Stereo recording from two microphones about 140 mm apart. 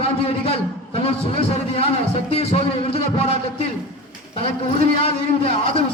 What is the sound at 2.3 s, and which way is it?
A man's voice, 45° left (ahead or behind).